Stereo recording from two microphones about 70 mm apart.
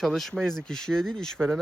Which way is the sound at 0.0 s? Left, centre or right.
Centre.